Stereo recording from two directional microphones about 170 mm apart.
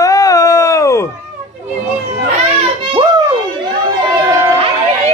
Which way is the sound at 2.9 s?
25° right (ahead or behind).